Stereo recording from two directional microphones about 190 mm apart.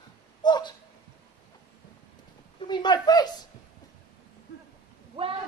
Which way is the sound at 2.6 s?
25° left (ahead or behind).